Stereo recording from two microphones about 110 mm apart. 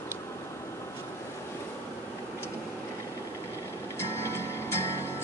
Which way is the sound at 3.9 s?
25° left (ahead or behind).